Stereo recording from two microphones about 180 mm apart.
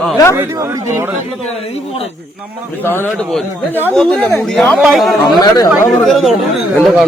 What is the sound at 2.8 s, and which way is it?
Speech, 10° left (ahead or behind).